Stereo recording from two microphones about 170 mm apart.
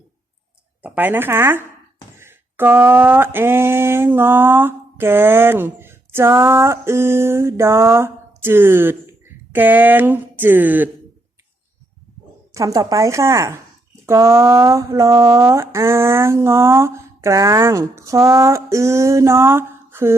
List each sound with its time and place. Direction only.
0.8 s speech: 10° right (ahead or behind)
12.5 s speech: 20° right (ahead or behind)